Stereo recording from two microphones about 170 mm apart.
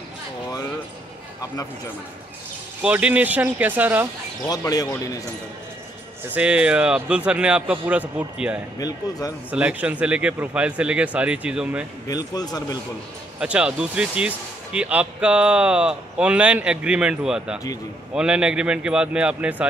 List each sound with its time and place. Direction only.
2.8 s speech: 10° right (ahead or behind)
4.5 s speech: 20° left (ahead or behind)
6.3 s speech: 5° right (ahead or behind)
8.7 s speech: 20° left (ahead or behind)
9.5 s speech: 10° right (ahead or behind)
12.1 s speech: 20° left (ahead or behind)
13.4 s speech: 5° right (ahead or behind)